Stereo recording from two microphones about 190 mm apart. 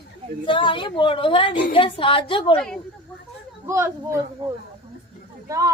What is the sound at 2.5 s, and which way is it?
Speech, 5° left (ahead or behind).